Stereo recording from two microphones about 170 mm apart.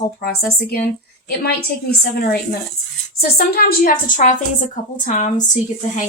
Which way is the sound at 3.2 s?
65° left (ahead or behind).